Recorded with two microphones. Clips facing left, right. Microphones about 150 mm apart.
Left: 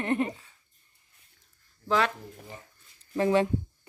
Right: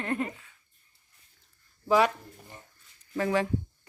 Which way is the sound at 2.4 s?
90° left.